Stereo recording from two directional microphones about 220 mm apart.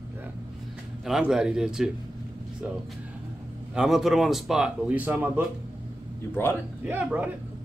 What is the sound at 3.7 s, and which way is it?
Speech, centre (ahead or behind).